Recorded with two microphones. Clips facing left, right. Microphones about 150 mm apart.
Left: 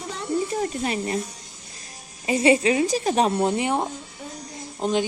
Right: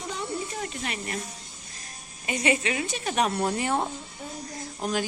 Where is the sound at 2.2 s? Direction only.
30° left (ahead or behind).